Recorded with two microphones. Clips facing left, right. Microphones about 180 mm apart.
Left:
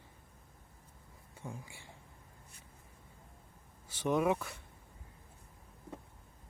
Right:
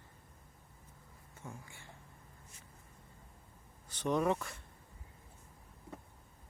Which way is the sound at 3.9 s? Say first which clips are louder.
Left 1 dB; 5° left (ahead or behind).